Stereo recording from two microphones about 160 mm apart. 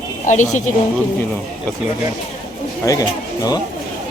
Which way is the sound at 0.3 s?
50° left (ahead or behind).